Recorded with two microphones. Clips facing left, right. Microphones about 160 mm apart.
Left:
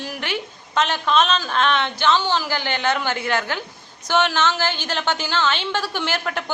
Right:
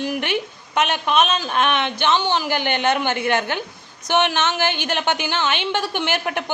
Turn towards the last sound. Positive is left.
turn(degrees=-20)  # may be behind; listen again after turning